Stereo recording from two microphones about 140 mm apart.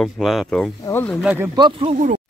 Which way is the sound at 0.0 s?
Centre (ahead or behind).